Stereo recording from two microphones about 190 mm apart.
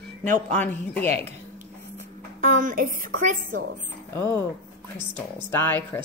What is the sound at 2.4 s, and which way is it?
A woman's voice, 45° right (ahead or behind).